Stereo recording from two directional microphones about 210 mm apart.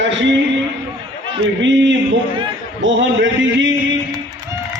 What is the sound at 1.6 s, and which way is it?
A man's voice, 60° right (ahead or behind).